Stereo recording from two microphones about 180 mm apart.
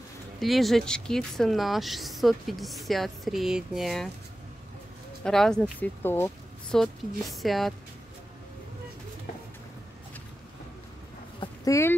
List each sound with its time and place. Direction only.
0.4 s speech: centre (ahead or behind)
5.2 s speech: 5° left (ahead or behind)
6.8 s speech: centre (ahead or behind)
11.3 s a sound: 20° left (ahead or behind)